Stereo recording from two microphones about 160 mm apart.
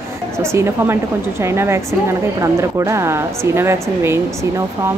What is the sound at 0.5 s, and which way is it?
Speech, 15° right (ahead or behind).